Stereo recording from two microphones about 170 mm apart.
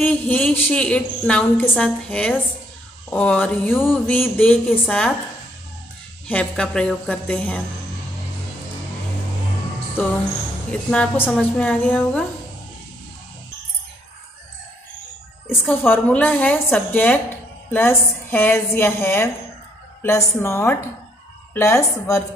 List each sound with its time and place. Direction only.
0.0 s a woman's voice: 10° left (ahead or behind)
6.2 s a woman's voice: 5° left (ahead or behind)
10.7 s a woman's voice: 5° left (ahead or behind)
15.7 s a woman's voice: 10° left (ahead or behind)